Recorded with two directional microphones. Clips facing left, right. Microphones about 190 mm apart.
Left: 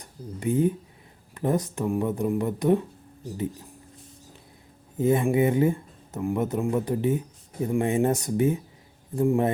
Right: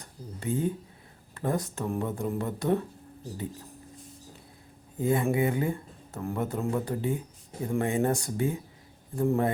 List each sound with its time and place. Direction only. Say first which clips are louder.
0.0 s speech: left 6 dB; 15° left (ahead or behind)
4.9 s speech: left 4 dB; 20° left (ahead or behind)